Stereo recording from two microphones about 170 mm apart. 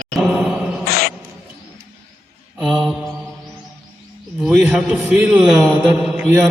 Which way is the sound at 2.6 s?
Centre (ahead or behind).